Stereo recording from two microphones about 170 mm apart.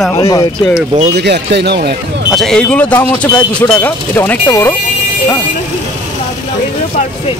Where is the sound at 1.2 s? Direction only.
80° right.